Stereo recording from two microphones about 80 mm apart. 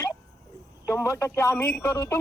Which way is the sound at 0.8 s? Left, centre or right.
Left.